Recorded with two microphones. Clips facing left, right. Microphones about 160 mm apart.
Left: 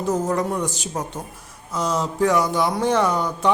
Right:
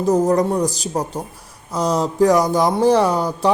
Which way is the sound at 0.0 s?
35° right (ahead or behind).